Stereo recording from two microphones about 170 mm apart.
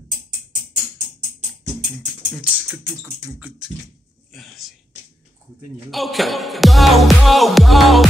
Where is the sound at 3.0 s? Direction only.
10° right (ahead or behind).